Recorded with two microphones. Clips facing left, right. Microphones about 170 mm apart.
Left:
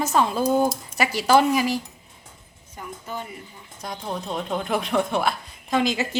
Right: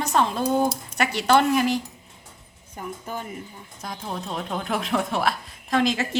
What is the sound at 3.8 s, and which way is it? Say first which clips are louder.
A woman's voice: left 2 dB; centre (ahead or behind).